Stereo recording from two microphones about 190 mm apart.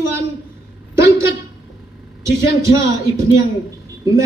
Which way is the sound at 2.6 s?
15° right (ahead or behind).